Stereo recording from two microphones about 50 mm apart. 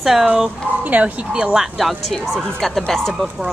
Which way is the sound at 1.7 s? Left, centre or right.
Centre.